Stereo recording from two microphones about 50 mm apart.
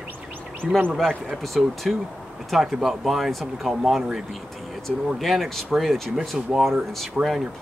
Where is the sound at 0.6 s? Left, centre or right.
Right.